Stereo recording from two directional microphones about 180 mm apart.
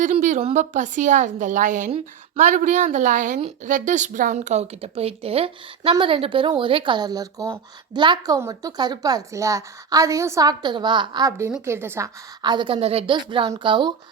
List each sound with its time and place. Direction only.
0.0 s a woman's voice: 45° right (ahead or behind); by 13.9 s 25° right (ahead or behind)